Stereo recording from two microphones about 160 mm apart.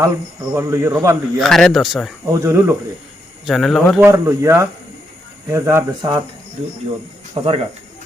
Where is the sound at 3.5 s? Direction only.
Centre (ahead or behind).